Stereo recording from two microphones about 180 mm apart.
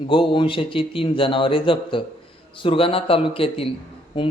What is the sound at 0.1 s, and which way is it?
A man's voice, 30° left (ahead or behind).